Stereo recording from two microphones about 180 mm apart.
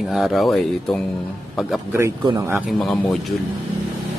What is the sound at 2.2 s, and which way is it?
Speech, 25° right (ahead or behind).